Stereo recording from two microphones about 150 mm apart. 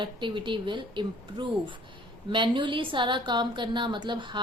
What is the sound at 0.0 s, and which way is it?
A woman's voice, 35° right (ahead or behind).